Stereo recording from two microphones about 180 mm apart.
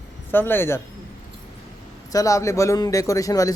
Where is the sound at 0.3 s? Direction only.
10° left (ahead or behind).